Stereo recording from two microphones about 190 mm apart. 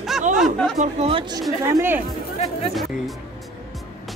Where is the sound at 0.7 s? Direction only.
35° right (ahead or behind).